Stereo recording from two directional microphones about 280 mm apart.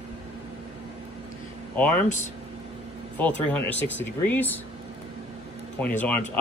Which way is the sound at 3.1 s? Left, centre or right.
Centre.